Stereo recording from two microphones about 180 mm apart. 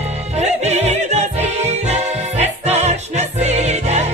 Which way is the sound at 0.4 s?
40° right (ahead or behind).